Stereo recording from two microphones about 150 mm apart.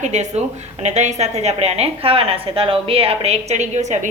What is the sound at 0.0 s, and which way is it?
Speech, 50° right (ahead or behind).